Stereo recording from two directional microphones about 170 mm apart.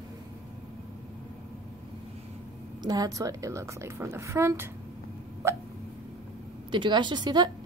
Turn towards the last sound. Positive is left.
turn(degrees=-25)  # may be behind; listen again after turning